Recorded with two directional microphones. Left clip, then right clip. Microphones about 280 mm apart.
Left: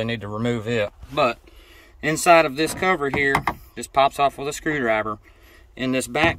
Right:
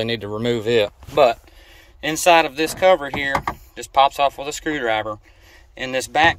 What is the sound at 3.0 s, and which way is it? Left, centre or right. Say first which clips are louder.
Speech: left 2 dB; centre.